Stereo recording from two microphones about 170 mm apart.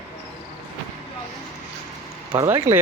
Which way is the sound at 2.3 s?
20° right (ahead or behind).